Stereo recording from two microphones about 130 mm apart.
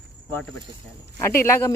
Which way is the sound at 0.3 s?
15° left (ahead or behind).